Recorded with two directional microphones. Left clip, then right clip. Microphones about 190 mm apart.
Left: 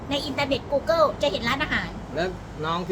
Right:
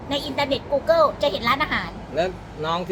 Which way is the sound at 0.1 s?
10° left (ahead or behind).